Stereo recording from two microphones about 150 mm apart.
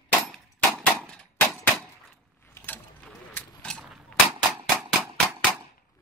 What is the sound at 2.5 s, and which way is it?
Cap gun, 10° left (ahead or behind).